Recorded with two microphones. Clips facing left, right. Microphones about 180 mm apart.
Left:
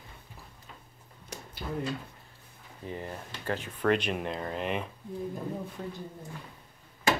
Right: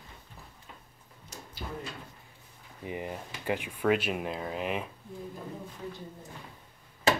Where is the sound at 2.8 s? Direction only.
15° right (ahead or behind).